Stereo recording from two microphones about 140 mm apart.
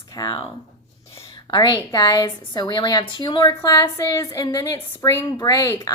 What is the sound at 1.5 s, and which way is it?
A woman's voice, 35° left (ahead or behind).